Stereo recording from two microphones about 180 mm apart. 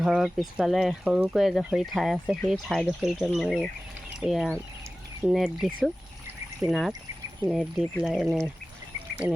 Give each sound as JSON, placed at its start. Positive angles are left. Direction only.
{"t": 0.0, "sound": "speech", "side_deg": 0}